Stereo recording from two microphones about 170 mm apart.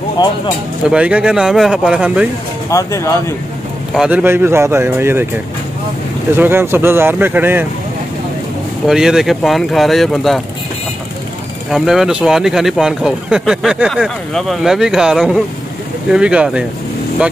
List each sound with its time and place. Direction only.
0.8 s speech: 5° right (ahead or behind)
2.7 s speech: 20° left (ahead or behind)
3.9 s speech: 5° right (ahead or behind)
6.3 s speech: 15° right (ahead or behind)
8.8 s speech: 5° right (ahead or behind)
11.7 s speech: centre (ahead or behind)